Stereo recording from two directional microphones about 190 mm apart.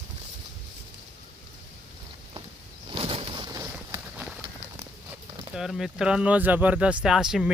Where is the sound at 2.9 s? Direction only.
30° right (ahead or behind).